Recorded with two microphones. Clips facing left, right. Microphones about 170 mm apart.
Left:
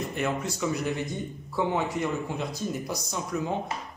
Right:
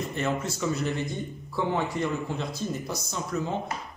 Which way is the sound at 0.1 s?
15° left (ahead or behind).